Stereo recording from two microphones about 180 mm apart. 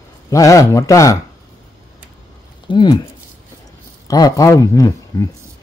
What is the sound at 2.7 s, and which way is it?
Speech, 25° left (ahead or behind).